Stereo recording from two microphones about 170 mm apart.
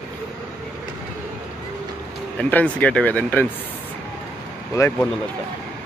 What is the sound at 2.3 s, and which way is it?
Speech, 10° left (ahead or behind).